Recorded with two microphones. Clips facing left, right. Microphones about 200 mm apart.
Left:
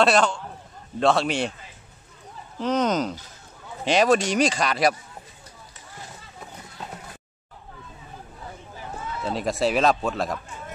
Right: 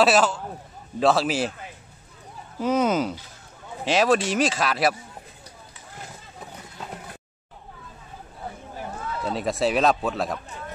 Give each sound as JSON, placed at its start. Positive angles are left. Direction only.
{"t": 0.0, "sound": "speech", "side_deg": -5}
{"t": 2.6, "sound": "speech", "side_deg": -10}
{"t": 9.2, "sound": "speech", "side_deg": 0}